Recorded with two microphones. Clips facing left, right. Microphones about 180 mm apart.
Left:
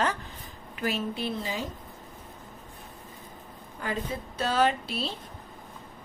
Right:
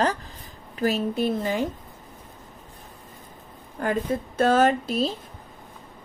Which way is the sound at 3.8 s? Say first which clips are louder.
Right 8 dB; 50° right (ahead or behind).